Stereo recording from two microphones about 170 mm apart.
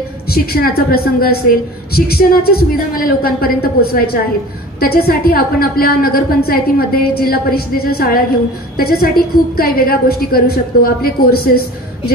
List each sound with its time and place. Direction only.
0.3 s a woman's voice: 65° left (ahead or behind)